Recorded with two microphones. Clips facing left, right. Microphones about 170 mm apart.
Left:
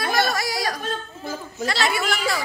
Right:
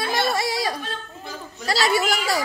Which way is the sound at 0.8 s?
45° left (ahead or behind).